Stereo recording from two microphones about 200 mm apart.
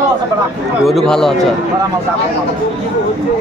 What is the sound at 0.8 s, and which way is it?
Speech, centre (ahead or behind).